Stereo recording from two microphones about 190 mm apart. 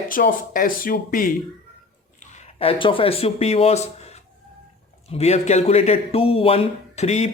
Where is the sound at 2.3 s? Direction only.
30° left (ahead or behind).